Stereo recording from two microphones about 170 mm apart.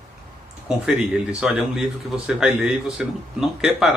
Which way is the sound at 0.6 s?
5° right (ahead or behind).